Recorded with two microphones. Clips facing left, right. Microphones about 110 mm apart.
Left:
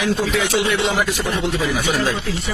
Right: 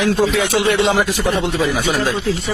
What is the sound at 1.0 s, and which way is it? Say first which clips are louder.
Speech: right 3 dB; 25° right (ahead or behind).